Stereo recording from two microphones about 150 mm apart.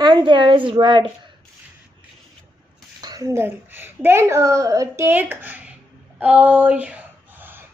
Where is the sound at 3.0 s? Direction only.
25° right (ahead or behind).